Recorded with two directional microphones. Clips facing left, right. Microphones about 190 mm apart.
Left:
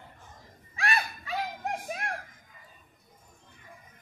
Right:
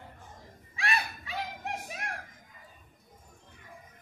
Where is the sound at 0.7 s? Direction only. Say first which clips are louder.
Left 2 dB; 40° left (ahead or behind).